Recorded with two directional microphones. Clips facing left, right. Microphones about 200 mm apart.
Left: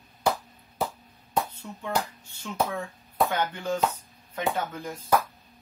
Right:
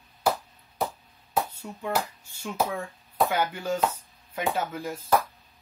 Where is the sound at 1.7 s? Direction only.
20° right (ahead or behind).